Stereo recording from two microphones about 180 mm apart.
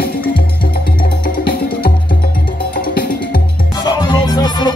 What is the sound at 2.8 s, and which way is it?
Music, 55° left (ahead or behind).